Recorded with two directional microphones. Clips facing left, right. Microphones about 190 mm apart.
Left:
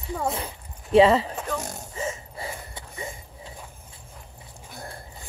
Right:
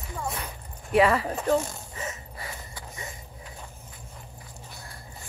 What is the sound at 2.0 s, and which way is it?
Gasp, 25° left (ahead or behind).